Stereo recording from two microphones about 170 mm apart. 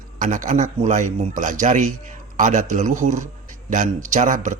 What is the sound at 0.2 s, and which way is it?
A man's voice, 50° right (ahead or behind).